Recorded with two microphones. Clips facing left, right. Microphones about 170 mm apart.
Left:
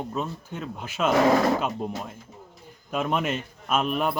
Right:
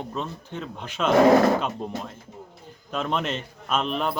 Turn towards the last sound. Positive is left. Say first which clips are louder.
# left 1 dB
turn(degrees=5)  # may be behind; listen again after turning